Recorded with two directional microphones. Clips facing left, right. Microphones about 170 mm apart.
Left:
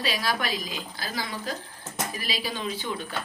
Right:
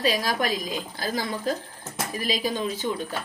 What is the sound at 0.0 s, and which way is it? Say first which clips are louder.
A woman's voice: right 4 dB; 45° right (ahead or behind).